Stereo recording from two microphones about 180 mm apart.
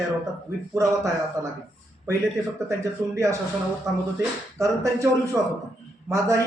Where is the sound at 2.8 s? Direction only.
15° right (ahead or behind).